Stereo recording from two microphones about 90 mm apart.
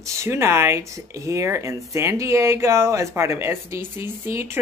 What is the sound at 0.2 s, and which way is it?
Speech, 30° right (ahead or behind).